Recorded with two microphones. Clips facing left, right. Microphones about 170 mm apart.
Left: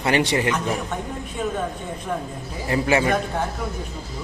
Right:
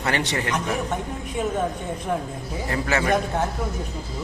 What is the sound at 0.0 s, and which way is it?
Speech, 10° left (ahead or behind).